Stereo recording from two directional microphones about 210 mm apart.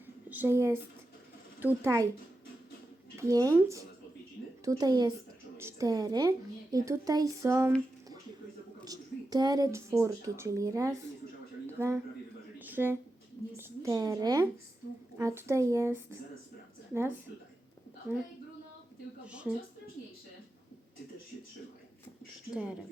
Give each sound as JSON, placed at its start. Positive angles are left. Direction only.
{"t": 0.3, "sound": "a woman's voice", "side_deg": -10}
{"t": 3.2, "sound": "a woman's voice", "side_deg": -15}
{"t": 8.8, "sound": "speech", "side_deg": -20}
{"t": 11.6, "sound": "a sound", "side_deg": -10}
{"t": 13.6, "sound": "a woman's voice", "side_deg": -10}
{"t": 19.3, "sound": "a woman's voice", "side_deg": -5}
{"t": 22.5, "sound": "a woman's voice", "side_deg": -5}